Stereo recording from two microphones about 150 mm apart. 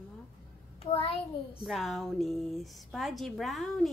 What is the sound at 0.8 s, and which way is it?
Speech, 40° left (ahead or behind).